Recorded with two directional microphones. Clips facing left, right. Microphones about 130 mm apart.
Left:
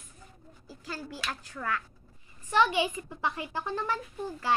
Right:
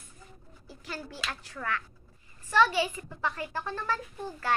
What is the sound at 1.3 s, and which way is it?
Speech, 5° left (ahead or behind).